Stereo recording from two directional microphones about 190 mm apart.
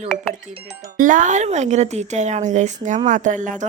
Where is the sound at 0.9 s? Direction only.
45° right (ahead or behind).